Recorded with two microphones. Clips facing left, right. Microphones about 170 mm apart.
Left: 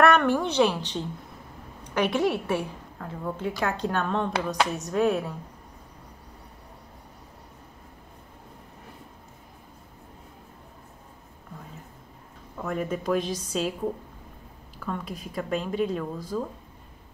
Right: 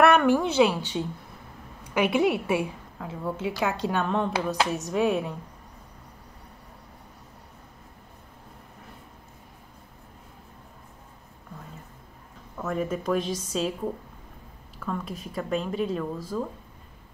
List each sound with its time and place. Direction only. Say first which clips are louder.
0.0 s a woman's voice: right 1 dB; 5° right (ahead or behind)
12.5 s speech: right 1 dB; centre (ahead or behind)
14.8 s speech: right 1 dB; centre (ahead or behind)